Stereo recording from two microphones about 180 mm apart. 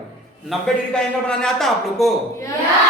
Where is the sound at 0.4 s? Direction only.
Centre (ahead or behind).